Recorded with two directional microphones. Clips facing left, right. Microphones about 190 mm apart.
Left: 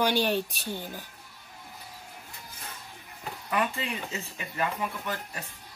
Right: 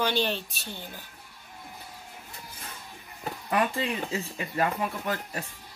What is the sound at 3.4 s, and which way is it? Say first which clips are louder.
Speech: right 3 dB; 35° right (ahead or behind).